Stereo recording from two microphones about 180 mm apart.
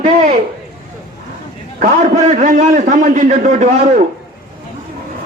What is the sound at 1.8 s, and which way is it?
A man's voice, 45° right (ahead or behind).